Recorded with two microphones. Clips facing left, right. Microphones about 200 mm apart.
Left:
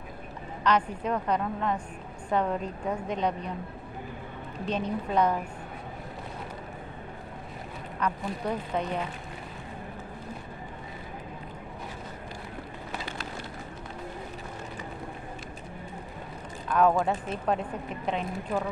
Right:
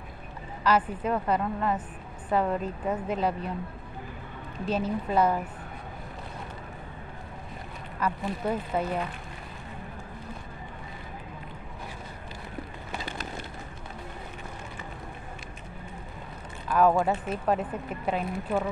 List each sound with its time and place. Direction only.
0.7 s speech: 5° right (ahead or behind)
4.6 s speech: 5° right (ahead or behind)
8.0 s speech: 5° right (ahead or behind)
16.6 s speech: 5° right (ahead or behind)